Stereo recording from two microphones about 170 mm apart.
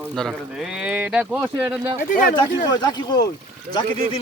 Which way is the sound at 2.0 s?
50° left (ahead or behind).